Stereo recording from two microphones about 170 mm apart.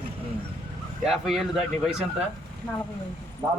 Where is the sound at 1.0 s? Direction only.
Centre (ahead or behind).